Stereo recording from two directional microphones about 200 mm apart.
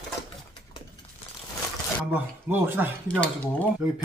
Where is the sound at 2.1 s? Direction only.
10° right (ahead or behind).